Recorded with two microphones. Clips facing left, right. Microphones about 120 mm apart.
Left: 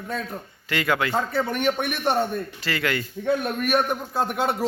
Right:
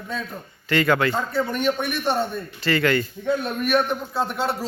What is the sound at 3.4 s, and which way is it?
A man's voice, 45° left (ahead or behind).